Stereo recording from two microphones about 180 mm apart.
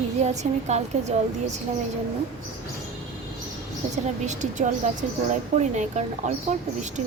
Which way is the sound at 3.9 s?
40° right (ahead or behind).